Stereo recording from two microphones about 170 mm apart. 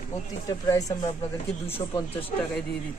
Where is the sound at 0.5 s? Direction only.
20° left (ahead or behind).